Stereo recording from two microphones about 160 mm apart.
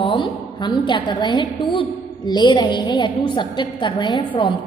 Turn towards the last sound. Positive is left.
turn(degrees=30)  # may be behind; listen again after turning